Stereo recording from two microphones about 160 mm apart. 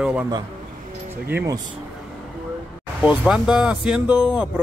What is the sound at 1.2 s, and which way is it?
Speech, 15° right (ahead or behind).